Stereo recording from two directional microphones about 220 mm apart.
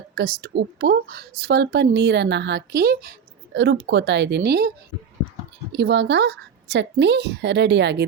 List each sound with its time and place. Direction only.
0.2 s a woman's voice: 45° right (ahead or behind)
5.7 s a woman's voice: 50° right (ahead or behind)